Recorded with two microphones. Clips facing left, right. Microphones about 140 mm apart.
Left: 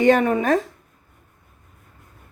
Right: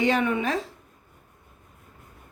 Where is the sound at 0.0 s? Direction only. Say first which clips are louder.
Left 6 dB; 45° left (ahead or behind).